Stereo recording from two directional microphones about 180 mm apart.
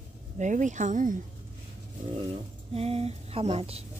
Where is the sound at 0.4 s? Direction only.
45° right (ahead or behind).